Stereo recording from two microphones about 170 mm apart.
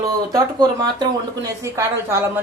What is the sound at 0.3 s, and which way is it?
Speech, 25° right (ahead or behind).